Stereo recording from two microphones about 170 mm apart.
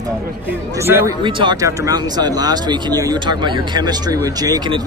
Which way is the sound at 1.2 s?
30° right (ahead or behind).